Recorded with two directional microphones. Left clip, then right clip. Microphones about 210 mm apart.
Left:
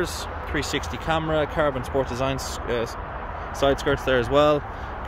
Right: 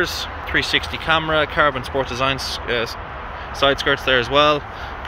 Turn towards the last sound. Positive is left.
turn(degrees=25)  # may be behind; listen again after turning